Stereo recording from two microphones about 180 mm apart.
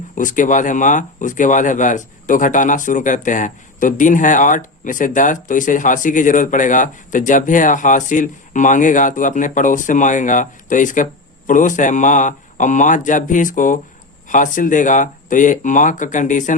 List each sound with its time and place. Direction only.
0.2 s speech: 45° left (ahead or behind)